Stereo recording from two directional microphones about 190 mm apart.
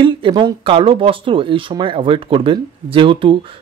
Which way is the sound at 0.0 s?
25° right (ahead or behind).